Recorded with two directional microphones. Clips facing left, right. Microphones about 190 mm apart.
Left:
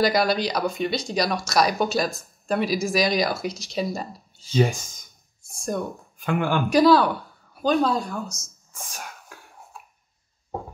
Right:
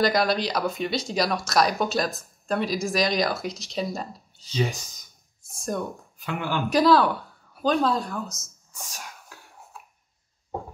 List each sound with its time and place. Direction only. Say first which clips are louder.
0.0 s speech: left 1 dB; centre (ahead or behind)
4.4 s speech: left 6 dB; 50° left (ahead or behind)
5.5 s speech: left 1 dB; centre (ahead or behind)
6.1 s speech: left 6 dB; 50° left (ahead or behind)
6.7 s speech: left 2 dB; centre (ahead or behind)
8.7 s a sound: left 3 dB; 55° left (ahead or behind)